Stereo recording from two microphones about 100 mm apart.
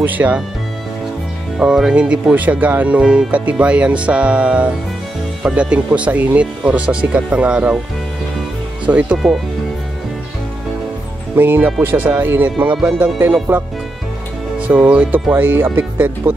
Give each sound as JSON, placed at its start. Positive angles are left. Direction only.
{"t": 0.0, "sound": "speech", "side_deg": -15}
{"t": 1.6, "sound": "speech", "side_deg": -10}
{"t": 8.8, "sound": "speech", "side_deg": -15}
{"t": 11.3, "sound": "speech", "side_deg": -20}
{"t": 14.6, "sound": "speech", "side_deg": -15}